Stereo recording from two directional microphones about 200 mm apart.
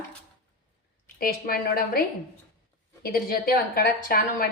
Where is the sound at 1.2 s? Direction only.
45° left (ahead or behind).